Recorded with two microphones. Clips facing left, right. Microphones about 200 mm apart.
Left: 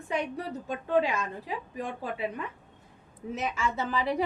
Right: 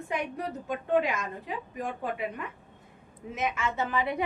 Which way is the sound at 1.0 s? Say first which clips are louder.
Left 1 dB; 30° left (ahead or behind).